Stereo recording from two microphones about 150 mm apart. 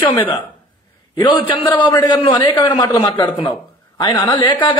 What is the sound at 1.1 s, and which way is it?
A man's voice, 30° left (ahead or behind).